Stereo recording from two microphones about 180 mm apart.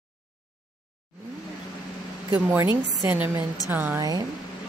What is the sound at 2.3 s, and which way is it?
Speech, 10° right (ahead or behind).